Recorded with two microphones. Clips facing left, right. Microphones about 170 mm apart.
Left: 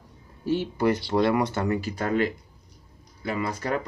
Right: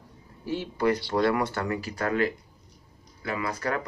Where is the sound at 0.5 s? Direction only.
25° left (ahead or behind).